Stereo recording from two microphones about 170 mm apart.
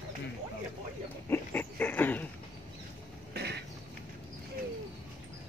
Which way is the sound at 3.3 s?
75° right (ahead or behind).